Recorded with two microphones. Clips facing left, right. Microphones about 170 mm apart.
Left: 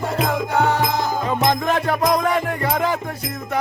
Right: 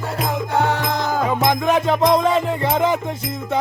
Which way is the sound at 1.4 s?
15° right (ahead or behind).